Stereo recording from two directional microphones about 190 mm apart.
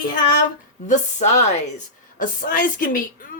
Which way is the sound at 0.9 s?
40° left (ahead or behind).